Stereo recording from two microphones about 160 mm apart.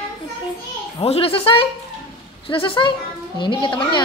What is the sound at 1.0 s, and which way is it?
A woman's voice, 40° left (ahead or behind).